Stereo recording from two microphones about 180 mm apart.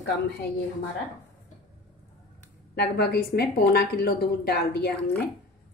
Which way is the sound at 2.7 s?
65° left (ahead or behind).